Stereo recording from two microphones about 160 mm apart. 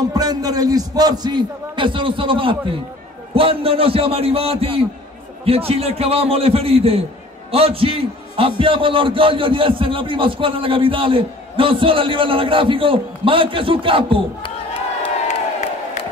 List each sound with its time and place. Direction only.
0.0 s a man's voice: 25° right (ahead or behind)